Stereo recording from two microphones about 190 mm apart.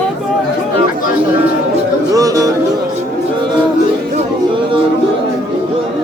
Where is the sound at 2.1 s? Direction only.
15° right (ahead or behind).